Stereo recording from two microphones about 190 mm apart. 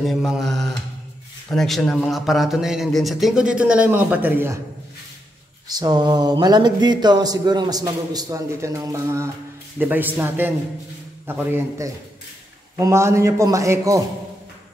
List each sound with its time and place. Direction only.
0.0 s mantra: centre (ahead or behind)
1.5 s a man's voice: centre (ahead or behind)
5.7 s a man's voice: 20° right (ahead or behind)